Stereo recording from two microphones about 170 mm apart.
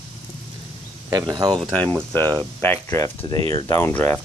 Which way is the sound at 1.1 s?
20° right (ahead or behind).